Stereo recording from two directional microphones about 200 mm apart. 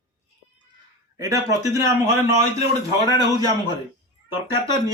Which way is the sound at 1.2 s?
15° right (ahead or behind).